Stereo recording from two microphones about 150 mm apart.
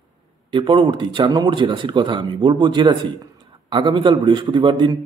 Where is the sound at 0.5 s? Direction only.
35° right (ahead or behind).